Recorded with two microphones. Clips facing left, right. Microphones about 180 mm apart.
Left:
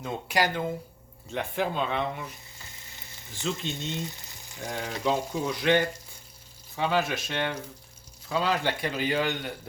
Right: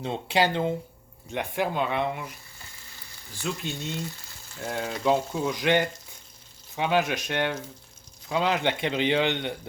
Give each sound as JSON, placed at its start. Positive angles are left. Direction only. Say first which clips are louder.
{"t": 0.0, "sound": "speech", "louder": "right 3 dB", "side_deg": -25}
{"t": 1.3, "sound": "speech", "louder": "right 1 dB", "side_deg": -10}
{"t": 3.2, "sound": "a sound", "louder": "right 1 dB", "side_deg": 20}
{"t": 3.7, "sound": "frying", "louder": "even", "side_deg": 20}
{"t": 5.0, "sound": "speech", "louder": "right 3 dB", "side_deg": -10}